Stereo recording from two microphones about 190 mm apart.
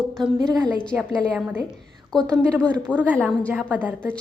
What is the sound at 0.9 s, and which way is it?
Speech, 10° right (ahead or behind).